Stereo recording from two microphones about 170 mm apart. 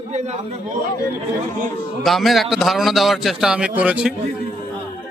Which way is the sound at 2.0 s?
Centre (ahead or behind).